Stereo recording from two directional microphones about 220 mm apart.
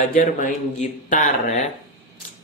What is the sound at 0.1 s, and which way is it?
Speech, 35° left (ahead or behind).